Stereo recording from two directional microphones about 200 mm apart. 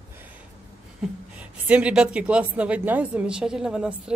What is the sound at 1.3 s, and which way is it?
A woman's voice, 5° right (ahead or behind).